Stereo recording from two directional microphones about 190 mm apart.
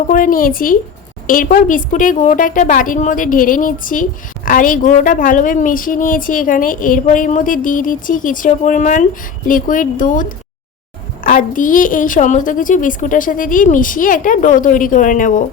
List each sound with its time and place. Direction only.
0.1 s a woman's voice: 45° left (ahead or behind)